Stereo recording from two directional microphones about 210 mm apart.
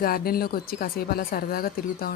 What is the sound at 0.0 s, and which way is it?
Speech, 45° left (ahead or behind).